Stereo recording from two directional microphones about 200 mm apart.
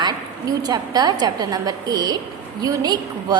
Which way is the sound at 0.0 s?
20° right (ahead or behind).